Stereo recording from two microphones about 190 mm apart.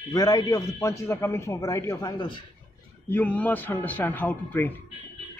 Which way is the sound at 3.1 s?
10° left (ahead or behind).